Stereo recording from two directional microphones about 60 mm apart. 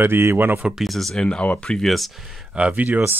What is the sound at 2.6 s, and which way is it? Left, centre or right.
Speech, right.